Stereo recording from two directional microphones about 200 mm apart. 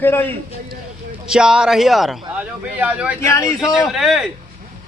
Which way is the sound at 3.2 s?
15° left (ahead or behind).